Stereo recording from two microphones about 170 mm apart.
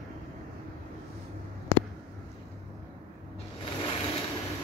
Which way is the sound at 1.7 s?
20° left (ahead or behind).